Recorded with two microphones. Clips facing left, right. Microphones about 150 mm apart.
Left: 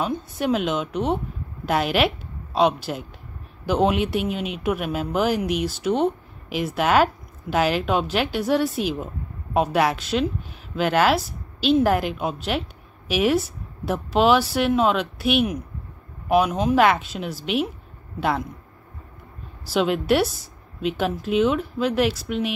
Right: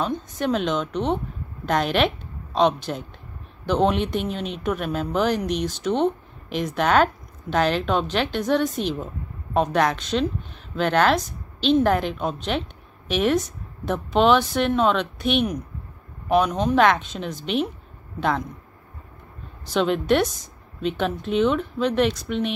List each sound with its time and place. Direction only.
0.0 s a woman's voice: 5° left (ahead or behind)
19.6 s a woman's voice: 5° left (ahead or behind)